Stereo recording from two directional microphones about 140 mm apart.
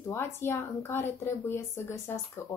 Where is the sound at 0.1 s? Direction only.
20° left (ahead or behind).